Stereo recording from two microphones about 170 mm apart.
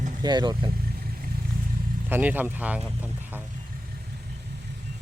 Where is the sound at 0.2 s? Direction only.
25° right (ahead or behind).